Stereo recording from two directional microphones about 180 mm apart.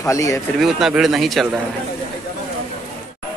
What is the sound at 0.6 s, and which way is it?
Speech, centre (ahead or behind).